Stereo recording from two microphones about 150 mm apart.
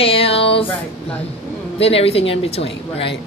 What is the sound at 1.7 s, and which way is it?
A woman's voice, 40° left (ahead or behind).